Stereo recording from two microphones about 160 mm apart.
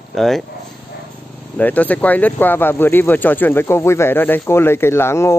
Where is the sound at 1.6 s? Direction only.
10° left (ahead or behind).